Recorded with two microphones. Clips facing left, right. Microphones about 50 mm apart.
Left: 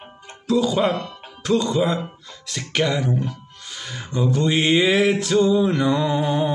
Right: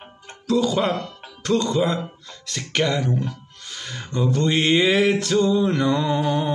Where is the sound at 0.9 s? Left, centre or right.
Left.